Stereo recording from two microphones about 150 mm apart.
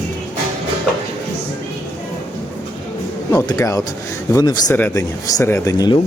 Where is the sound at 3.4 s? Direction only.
20° left (ahead or behind).